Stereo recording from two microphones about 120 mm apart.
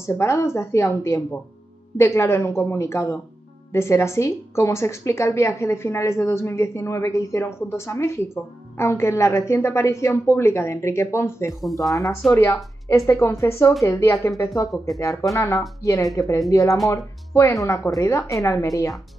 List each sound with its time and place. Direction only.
0.0 s a woman's voice: 20° left (ahead or behind)